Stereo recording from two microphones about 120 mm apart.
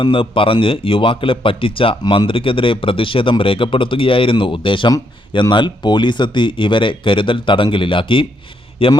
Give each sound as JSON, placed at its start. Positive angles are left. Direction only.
{"t": 0.0, "sound": "speech", "side_deg": 45}